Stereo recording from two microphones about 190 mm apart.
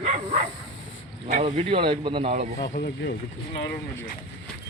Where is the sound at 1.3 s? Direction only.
35° right (ahead or behind).